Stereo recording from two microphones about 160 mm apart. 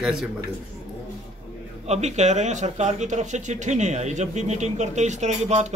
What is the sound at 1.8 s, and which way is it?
Speech, 45° right (ahead or behind).